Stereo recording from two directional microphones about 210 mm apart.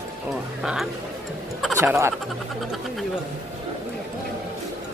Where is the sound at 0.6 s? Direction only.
Centre (ahead or behind).